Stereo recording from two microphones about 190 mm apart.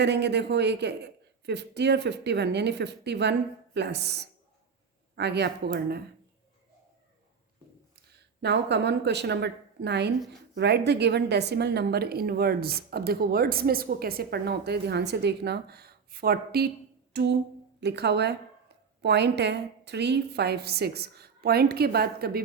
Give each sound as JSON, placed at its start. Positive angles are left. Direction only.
{"t": 0.0, "sound": "a woman's voice", "side_deg": -65}
{"t": 8.4, "sound": "a woman's voice", "side_deg": -65}
{"t": 17.1, "sound": "a sound", "side_deg": -60}
{"t": 17.7, "sound": "a woman's voice", "side_deg": -60}